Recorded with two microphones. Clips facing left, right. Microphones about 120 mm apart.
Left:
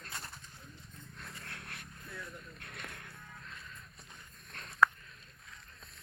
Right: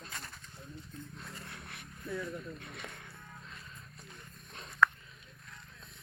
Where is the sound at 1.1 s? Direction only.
Centre (ahead or behind).